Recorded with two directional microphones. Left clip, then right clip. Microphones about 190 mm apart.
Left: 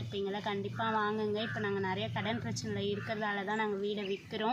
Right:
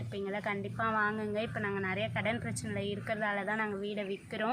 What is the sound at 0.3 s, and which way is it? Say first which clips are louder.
A woman's voice: right 3 dB; 30° right (ahead or behind).